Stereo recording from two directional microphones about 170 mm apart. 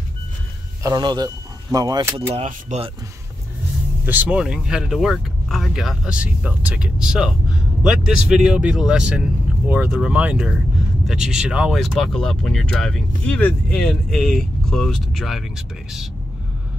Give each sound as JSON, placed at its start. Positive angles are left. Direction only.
{"t": 0.8, "sound": "speech", "side_deg": -25}
{"t": 2.3, "sound": "speech", "side_deg": -40}
{"t": 4.0, "sound": "speech", "side_deg": -10}